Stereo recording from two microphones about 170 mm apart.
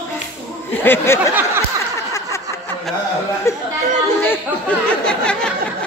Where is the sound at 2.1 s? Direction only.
15° left (ahead or behind).